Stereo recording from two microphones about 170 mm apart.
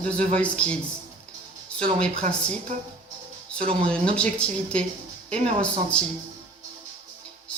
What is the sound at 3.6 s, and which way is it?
Speech, 30° right (ahead or behind).